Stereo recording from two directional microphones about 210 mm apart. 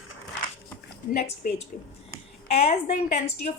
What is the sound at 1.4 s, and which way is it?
Speech, 40° left (ahead or behind).